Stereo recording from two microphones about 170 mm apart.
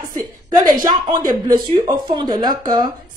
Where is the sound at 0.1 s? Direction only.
25° right (ahead or behind).